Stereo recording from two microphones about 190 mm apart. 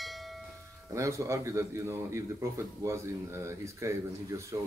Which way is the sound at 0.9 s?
15° right (ahead or behind).